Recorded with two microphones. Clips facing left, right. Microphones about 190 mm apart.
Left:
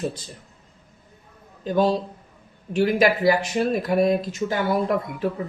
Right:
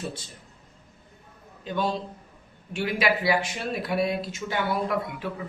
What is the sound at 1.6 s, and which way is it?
A man's voice, 40° left (ahead or behind).